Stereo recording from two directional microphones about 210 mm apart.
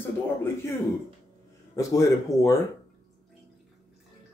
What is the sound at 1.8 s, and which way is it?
Speech, 15° left (ahead or behind).